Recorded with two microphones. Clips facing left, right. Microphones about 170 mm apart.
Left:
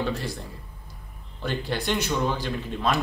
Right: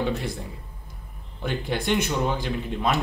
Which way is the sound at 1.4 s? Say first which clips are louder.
Right 1 dB; 15° right (ahead or behind).